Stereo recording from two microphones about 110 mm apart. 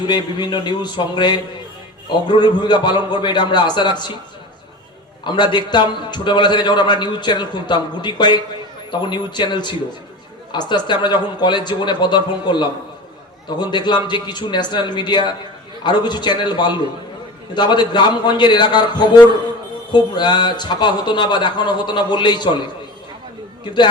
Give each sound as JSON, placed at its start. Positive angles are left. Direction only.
{"t": 0.0, "sound": "a man's voice", "side_deg": 45}
{"t": 5.2, "sound": "a man's voice", "side_deg": 45}